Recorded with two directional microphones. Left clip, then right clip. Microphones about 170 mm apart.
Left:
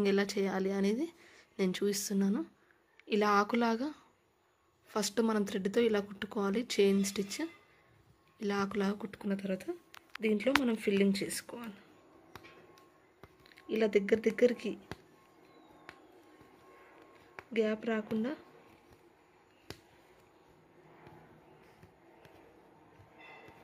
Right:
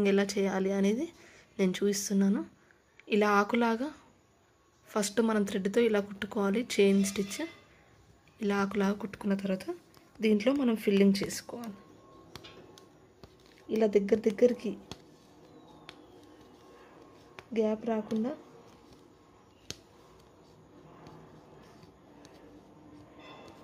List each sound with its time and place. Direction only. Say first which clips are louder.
0.0 s speech: right 3 dB; 10° left (ahead or behind)
13.2 s speech: even; centre (ahead or behind)
17.5 s speech: right 2 dB; 10° left (ahead or behind)